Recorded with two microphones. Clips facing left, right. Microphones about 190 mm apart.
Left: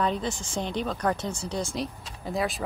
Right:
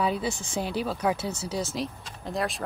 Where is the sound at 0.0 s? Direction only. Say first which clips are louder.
Even; 10° right (ahead or behind).